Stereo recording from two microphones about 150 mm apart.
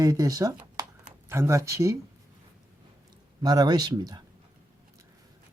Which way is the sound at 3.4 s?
25° right (ahead or behind).